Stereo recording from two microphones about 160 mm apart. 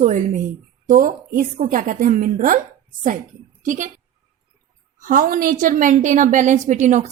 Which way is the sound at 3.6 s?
55° right (ahead or behind).